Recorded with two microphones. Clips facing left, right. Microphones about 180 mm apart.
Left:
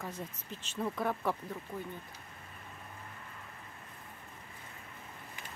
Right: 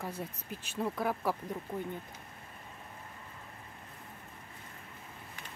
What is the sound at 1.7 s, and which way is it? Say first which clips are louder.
Speech: right 4 dB; 30° right (ahead or behind).